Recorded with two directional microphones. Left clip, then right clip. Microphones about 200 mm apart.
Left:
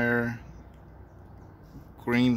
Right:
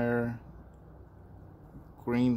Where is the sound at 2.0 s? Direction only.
Centre (ahead or behind).